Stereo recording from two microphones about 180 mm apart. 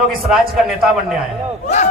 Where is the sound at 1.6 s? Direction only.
45° left (ahead or behind).